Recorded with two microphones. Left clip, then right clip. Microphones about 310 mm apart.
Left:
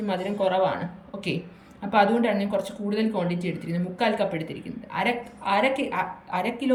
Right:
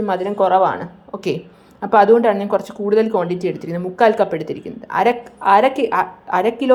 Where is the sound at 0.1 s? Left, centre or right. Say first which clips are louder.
Right 8 dB; right.